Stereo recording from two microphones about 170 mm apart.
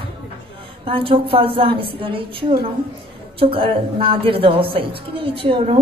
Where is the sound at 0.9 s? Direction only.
30° right (ahead or behind).